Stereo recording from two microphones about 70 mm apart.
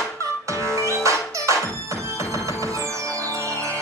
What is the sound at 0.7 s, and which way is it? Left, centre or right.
Music, right.